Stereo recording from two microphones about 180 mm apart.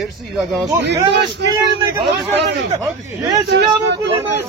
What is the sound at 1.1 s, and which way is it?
Speech, 70° right (ahead or behind).